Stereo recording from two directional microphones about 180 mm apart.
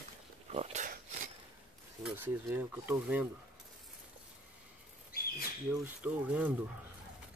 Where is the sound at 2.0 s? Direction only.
10° right (ahead or behind).